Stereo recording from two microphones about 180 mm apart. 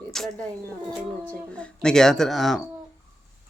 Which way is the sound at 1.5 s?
5° left (ahead or behind).